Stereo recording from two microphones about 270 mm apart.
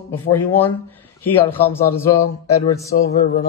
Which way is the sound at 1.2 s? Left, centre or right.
Centre.